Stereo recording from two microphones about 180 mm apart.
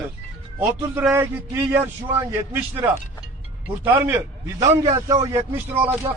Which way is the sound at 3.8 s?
10° right (ahead or behind).